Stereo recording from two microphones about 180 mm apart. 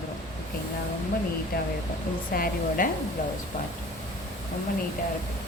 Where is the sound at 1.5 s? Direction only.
55° left (ahead or behind).